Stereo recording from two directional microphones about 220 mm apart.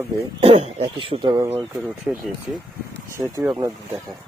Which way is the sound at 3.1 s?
15° right (ahead or behind).